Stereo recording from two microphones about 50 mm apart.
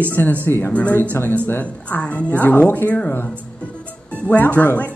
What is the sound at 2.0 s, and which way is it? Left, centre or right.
Speech, left.